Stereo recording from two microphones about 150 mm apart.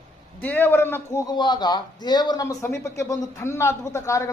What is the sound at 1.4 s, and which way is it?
Speech, 30° left (ahead or behind).